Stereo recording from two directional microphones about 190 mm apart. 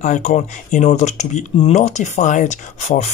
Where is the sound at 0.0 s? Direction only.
40° left (ahead or behind).